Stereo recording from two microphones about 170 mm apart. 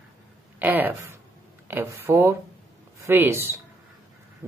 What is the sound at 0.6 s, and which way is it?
Speech, 10° right (ahead or behind).